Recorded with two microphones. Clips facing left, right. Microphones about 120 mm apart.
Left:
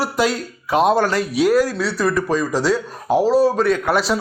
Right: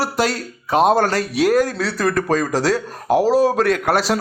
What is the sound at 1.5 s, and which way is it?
Speech, 50° right (ahead or behind).